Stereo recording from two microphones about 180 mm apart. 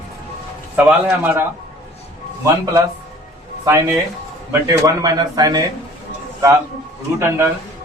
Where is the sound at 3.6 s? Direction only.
15° right (ahead or behind).